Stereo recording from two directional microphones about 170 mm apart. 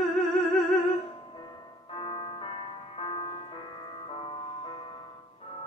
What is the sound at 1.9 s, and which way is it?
Music, 30° left (ahead or behind).